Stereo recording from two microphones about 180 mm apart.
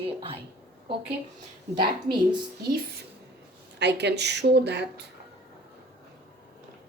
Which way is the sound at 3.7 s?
70° right (ahead or behind).